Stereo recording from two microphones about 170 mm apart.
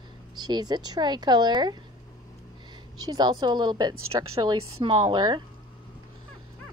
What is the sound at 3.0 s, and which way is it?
Speech, 25° right (ahead or behind).